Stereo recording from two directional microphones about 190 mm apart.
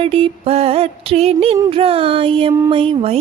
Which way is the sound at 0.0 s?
30° right (ahead or behind).